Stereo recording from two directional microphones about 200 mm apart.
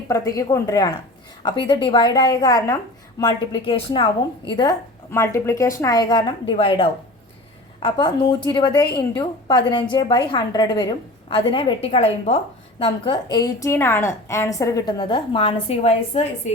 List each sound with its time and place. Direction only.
0.1 s a woman's voice: 15° left (ahead or behind)